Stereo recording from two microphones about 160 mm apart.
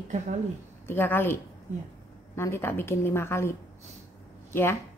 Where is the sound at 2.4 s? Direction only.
15° left (ahead or behind).